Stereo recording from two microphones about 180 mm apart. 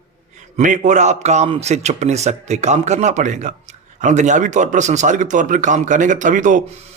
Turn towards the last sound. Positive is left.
turn(degrees=-45)  # may be behind; listen again after turning